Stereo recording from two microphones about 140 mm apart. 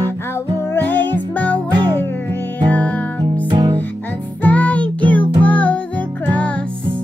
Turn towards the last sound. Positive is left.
turn(degrees=10)  # may be behind; listen again after turning